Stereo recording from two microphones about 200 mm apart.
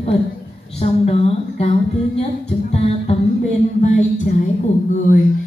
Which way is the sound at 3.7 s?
35° left (ahead or behind).